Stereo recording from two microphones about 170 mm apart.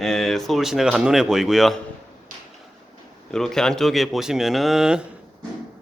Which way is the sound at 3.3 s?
5° left (ahead or behind).